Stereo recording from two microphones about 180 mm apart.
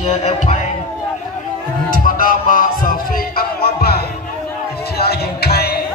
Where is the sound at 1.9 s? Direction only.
50° left (ahead or behind).